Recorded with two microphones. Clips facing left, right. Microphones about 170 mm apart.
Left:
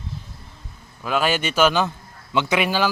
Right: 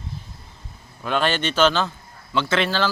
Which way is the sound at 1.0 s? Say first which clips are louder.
Left 1 dB; 5° left (ahead or behind).